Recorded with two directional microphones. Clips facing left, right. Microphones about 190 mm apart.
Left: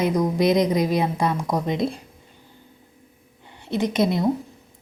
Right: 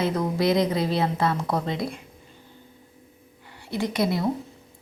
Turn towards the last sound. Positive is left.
turn(degrees=20)  # may be behind; listen again after turning